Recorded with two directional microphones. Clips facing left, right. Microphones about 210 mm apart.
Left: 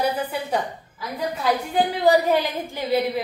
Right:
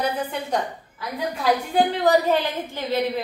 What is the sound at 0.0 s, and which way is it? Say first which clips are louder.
Speech: left 1 dB; 10° left (ahead or behind).